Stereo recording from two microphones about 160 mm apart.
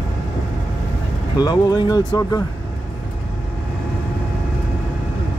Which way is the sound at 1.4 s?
25° left (ahead or behind).